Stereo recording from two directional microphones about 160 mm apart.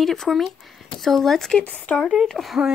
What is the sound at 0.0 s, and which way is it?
Speech, centre (ahead or behind).